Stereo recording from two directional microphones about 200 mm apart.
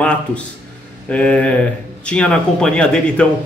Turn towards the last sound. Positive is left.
turn(degrees=5)  # may be behind; listen again after turning